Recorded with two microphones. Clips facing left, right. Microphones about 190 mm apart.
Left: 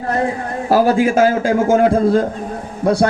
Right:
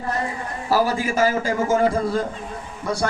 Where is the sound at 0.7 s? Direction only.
60° left (ahead or behind).